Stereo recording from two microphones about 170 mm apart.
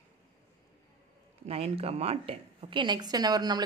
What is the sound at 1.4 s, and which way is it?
A woman's voice, 35° right (ahead or behind).